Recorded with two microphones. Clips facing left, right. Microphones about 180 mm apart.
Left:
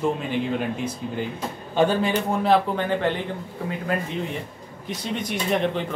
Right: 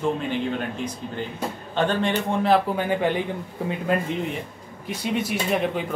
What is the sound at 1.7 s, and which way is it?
Speech, 10° left (ahead or behind).